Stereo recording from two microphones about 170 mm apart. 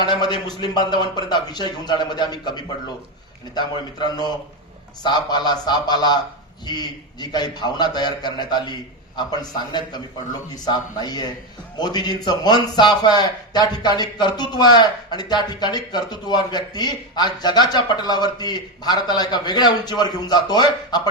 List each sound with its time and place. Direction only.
0.0 s a man's voice: 25° left (ahead or behind)